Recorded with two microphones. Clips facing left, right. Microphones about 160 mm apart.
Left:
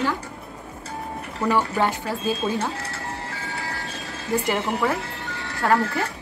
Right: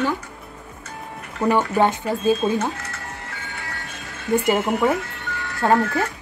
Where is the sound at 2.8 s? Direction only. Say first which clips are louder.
Left 3 dB; 30° left (ahead or behind).